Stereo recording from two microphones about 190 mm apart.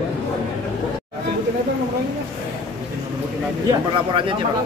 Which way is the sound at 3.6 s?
25° right (ahead or behind).